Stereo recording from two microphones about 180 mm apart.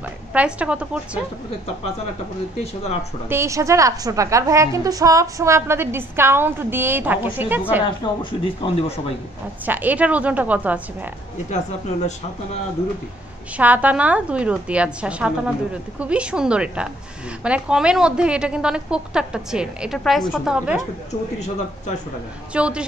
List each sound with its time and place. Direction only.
0.3 s a woman's voice: 5° right (ahead or behind)
2.6 s speech: 35° left (ahead or behind)
3.3 s a woman's voice: 15° right (ahead or behind)
7.8 s speech: 25° left (ahead or behind)
9.7 s a woman's voice: 10° right (ahead or behind)
13.6 s a woman's voice: 10° right (ahead or behind)
22.5 s a woman's voice: 5° right (ahead or behind)